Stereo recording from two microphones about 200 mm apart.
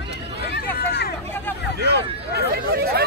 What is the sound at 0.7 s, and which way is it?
Hubbub, 50° left (ahead or behind).